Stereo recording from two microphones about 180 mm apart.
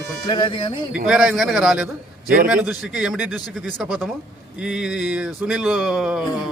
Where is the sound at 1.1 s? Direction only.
5° right (ahead or behind).